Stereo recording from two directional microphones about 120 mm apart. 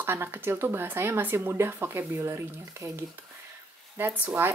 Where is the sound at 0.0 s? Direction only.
20° right (ahead or behind).